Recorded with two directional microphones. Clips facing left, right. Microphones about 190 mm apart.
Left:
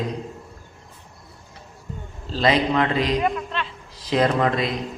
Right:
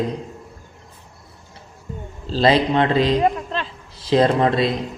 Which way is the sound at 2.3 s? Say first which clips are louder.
Right 3 dB; 30° right (ahead or behind).